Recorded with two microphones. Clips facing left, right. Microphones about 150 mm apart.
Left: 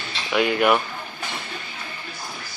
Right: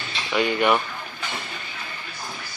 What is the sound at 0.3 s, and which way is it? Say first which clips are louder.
Speech: left 1 dB; 5° left (ahead or behind).